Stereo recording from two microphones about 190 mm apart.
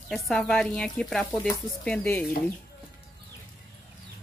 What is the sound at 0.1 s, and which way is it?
Speech, centre (ahead or behind).